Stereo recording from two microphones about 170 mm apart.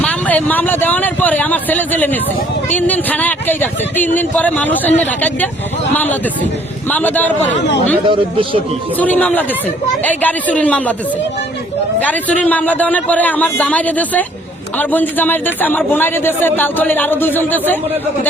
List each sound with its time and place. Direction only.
0.0 s a man's voice: 10° left (ahead or behind)
8.0 s speech: 30° right (ahead or behind)
9.0 s a man's voice: 10° left (ahead or behind)
11.9 s a man's voice: 10° left (ahead or behind)